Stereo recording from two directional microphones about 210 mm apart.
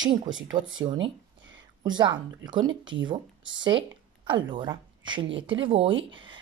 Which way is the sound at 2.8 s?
65° right (ahead or behind).